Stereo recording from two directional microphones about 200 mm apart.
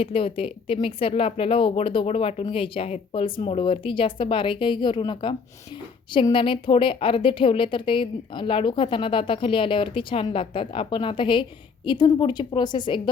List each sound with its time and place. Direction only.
0.0 s a woman's voice: 30° left (ahead or behind)